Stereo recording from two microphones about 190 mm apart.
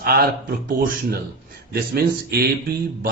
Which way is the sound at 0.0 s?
50° right (ahead or behind).